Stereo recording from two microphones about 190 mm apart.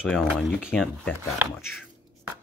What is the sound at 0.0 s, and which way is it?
Speech, centre (ahead or behind).